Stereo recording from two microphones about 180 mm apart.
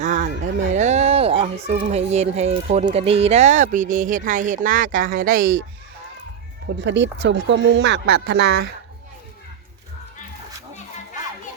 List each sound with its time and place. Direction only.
0.0 s a sound: 45° right (ahead or behind)
0.7 s speech: 40° right (ahead or behind)
6.8 s speech: 80° right